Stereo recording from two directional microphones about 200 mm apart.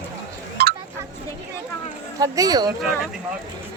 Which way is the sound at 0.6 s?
50° right (ahead or behind).